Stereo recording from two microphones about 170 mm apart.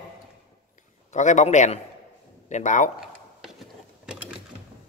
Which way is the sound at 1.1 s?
45° left (ahead or behind).